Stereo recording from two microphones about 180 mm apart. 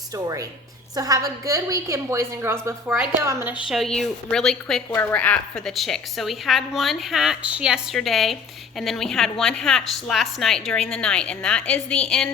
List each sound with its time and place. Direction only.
0.1 s a woman's voice: 20° right (ahead or behind)
3.7 s a woman's voice: centre (ahead or behind)